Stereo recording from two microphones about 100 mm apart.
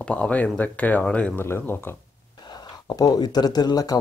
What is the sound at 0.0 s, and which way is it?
Speech, 10° left (ahead or behind).